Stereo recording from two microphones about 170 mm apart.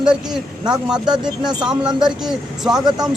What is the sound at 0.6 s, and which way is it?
A man's voice, 5° right (ahead or behind).